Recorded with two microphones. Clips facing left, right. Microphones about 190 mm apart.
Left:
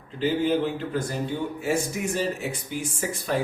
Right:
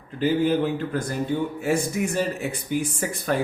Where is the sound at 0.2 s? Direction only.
55° right (ahead or behind).